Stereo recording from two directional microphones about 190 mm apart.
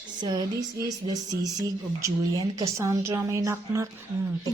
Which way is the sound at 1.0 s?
20° right (ahead or behind).